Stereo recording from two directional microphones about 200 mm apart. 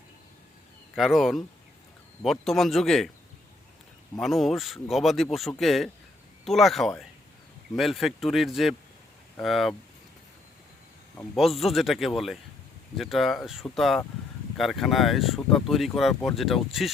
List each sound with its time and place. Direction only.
0.9 s speech: centre (ahead or behind)
4.2 s speech: centre (ahead or behind)
11.3 s speech: centre (ahead or behind)